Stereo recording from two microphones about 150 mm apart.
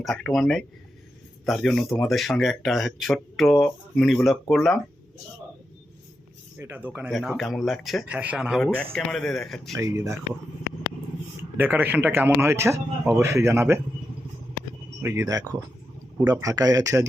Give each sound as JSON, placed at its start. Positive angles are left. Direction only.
{"t": 0.0, "sound": "speech", "side_deg": 5}
{"t": 6.6, "sound": "speech", "side_deg": -15}
{"t": 7.1, "sound": "speech", "side_deg": 0}
{"t": 9.7, "sound": "speech", "side_deg": -20}
{"t": 11.5, "sound": "speech", "side_deg": -10}
{"t": 15.0, "sound": "speech", "side_deg": -20}